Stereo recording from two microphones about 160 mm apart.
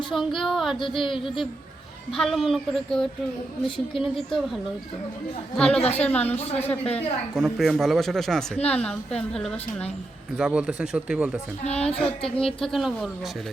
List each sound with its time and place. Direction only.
0.1 s speech: centre (ahead or behind)
1.0 s speech: 30° left (ahead or behind)
2.1 s a woman's voice: centre (ahead or behind)
11.6 s speech: 40° left (ahead or behind)
12.5 s speech: centre (ahead or behind)